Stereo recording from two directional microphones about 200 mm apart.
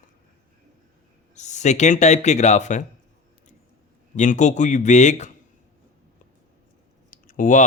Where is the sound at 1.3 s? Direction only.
35° left (ahead or behind).